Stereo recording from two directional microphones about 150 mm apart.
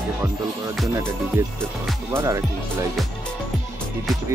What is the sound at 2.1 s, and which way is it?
Speech, 20° right (ahead or behind).